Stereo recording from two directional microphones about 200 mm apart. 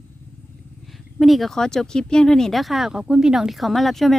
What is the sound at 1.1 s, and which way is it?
Speech, centre (ahead or behind).